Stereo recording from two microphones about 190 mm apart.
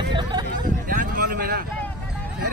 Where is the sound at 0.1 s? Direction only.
20° right (ahead or behind).